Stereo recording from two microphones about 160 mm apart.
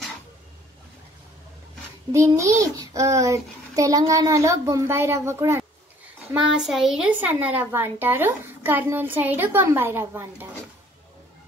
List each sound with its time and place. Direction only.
2.1 s a child's voice: 20° right (ahead or behind)
6.3 s a child's voice: 5° right (ahead or behind)